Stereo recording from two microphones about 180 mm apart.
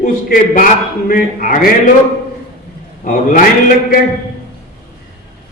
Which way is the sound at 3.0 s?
45° left (ahead or behind).